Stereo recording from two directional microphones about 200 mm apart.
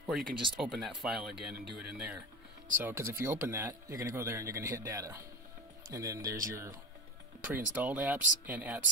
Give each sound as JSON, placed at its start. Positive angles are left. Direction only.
{"t": 0.0, "sound": "speech", "side_deg": -5}